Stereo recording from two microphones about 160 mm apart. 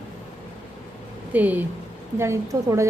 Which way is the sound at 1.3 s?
10° right (ahead or behind).